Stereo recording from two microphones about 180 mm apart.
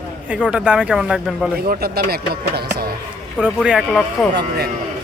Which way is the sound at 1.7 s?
55° right (ahead or behind).